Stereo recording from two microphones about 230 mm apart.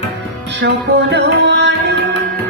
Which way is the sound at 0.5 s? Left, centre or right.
Right.